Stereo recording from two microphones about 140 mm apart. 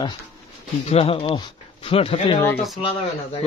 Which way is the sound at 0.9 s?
40° left (ahead or behind).